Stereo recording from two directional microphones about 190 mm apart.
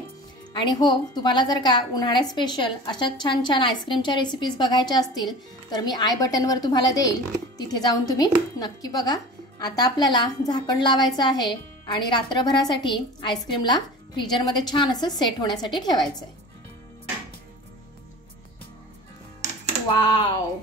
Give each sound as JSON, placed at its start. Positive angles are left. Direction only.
{"t": 0.5, "sound": "a woman's voice", "side_deg": 20}
{"t": 19.9, "sound": "a woman's voice", "side_deg": 25}